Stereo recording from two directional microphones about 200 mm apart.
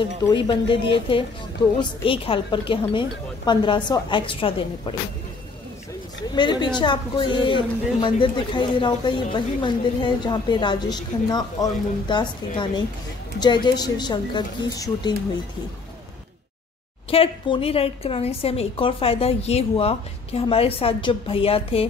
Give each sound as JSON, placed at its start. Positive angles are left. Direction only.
{"t": 0.2, "sound": "speech", "side_deg": 25}
{"t": 6.3, "sound": "speech", "side_deg": 25}
{"t": 17.1, "sound": "speech", "side_deg": 30}